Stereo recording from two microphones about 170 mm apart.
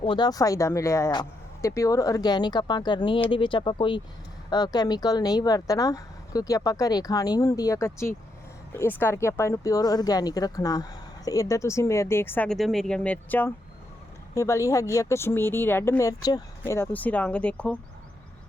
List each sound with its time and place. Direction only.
0.0 s speech: 30° left (ahead or behind); by 17.7 s 5° left (ahead or behind)